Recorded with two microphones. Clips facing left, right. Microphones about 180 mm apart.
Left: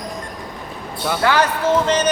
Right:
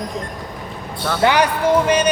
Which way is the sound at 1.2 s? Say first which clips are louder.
Right 2 dB; 15° right (ahead or behind).